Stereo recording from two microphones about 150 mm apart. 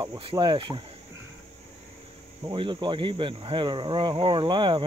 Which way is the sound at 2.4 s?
30° right (ahead or behind).